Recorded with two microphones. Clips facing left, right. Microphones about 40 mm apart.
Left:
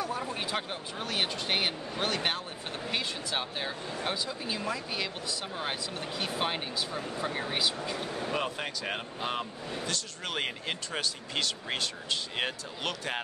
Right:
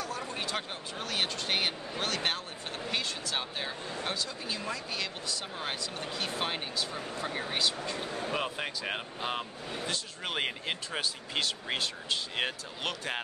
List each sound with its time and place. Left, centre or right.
0.0 s a sound: centre
0.3 s speech: centre
9.7 s speech: centre